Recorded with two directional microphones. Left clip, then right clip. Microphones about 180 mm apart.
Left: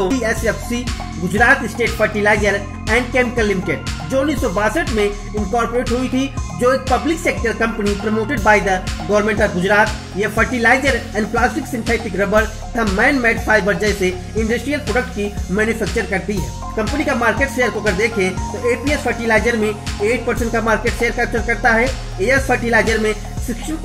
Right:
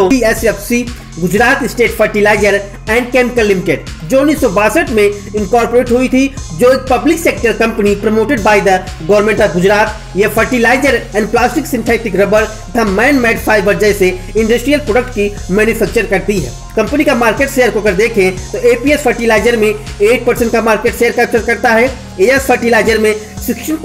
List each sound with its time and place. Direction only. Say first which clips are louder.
0.0 s speech: right 8 dB; 30° right (ahead or behind)